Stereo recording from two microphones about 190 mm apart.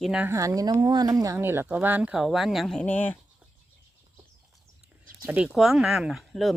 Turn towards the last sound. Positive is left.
turn(degrees=0)  # may be behind; listen again after turning